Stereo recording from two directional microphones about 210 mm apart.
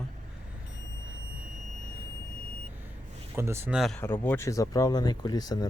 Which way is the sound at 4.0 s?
10° left (ahead or behind).